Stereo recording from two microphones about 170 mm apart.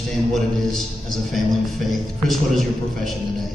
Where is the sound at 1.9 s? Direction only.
Centre (ahead or behind).